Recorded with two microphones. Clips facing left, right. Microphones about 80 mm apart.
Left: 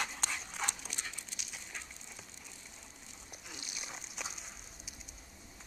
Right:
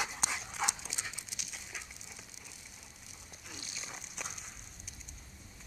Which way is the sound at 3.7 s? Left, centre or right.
Centre.